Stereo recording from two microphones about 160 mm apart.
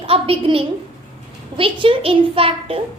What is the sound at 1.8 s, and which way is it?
Speech, 35° right (ahead or behind).